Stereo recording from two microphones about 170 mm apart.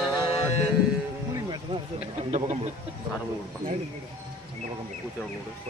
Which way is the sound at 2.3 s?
40° right (ahead or behind).